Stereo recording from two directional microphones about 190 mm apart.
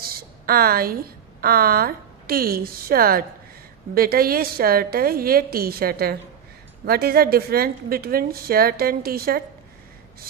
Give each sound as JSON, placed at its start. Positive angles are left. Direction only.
{"t": 0.0, "sound": "a woman's voice", "side_deg": -50}